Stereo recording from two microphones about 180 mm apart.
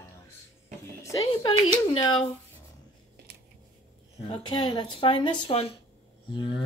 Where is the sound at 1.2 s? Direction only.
30° left (ahead or behind).